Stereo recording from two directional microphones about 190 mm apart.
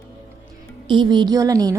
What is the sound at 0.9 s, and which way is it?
Speech, 25° right (ahead or behind).